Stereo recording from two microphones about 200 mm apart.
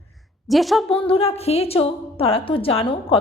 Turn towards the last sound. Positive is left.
turn(degrees=25)  # may be behind; listen again after turning